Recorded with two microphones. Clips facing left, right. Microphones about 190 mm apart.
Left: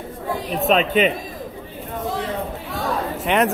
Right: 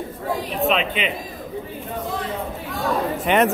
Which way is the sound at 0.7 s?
40° left (ahead or behind).